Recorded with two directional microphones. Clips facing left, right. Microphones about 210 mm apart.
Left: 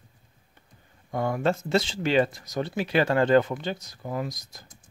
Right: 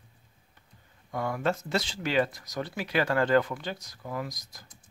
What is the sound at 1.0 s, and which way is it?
Speech, 25° left (ahead or behind).